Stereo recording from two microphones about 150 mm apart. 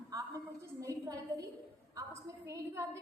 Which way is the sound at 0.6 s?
20° right (ahead or behind).